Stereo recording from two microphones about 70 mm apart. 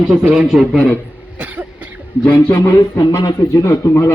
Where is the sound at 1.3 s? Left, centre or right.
Right.